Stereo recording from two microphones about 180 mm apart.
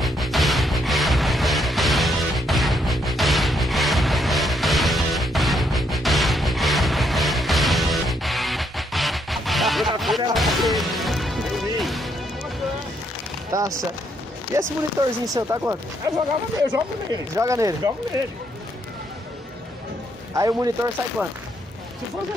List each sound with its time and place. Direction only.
0.0 s music: centre (ahead or behind)
10.3 s smash: centre (ahead or behind)
13.5 s music: 20° right (ahead or behind)
14.5 s speech: 15° right (ahead or behind)
20.3 s speech: 20° right (ahead or behind)